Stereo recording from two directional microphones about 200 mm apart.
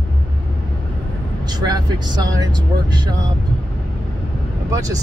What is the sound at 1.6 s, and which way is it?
Speech, 20° right (ahead or behind).